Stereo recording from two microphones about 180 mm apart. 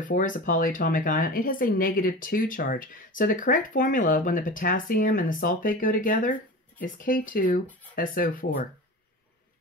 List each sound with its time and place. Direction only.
0.0 s speech: 45° left (ahead or behind)